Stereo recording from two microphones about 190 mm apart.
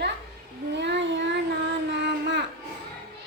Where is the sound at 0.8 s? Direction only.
65° right (ahead or behind).